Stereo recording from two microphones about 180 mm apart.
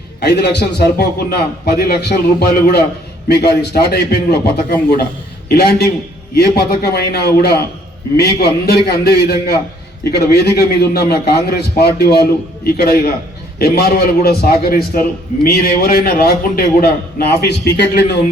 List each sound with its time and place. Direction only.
0.2 s a man's voice: 65° left (ahead or behind)